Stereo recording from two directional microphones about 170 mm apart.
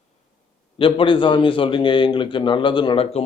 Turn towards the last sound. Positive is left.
turn(degrees=30)  # may be behind; listen again after turning